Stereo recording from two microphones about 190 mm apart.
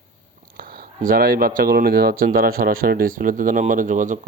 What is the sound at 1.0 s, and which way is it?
Speech, 50° right (ahead or behind).